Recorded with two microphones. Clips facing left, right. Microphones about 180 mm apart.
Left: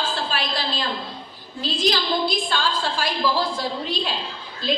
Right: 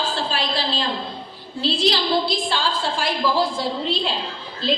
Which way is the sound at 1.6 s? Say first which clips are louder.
Right 2 dB; 30° right (ahead or behind).